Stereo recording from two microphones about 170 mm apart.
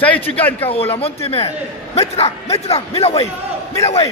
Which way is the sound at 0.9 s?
35° left (ahead or behind).